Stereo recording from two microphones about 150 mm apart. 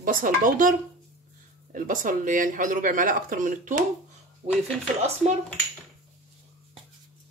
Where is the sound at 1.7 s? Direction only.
60° right (ahead or behind).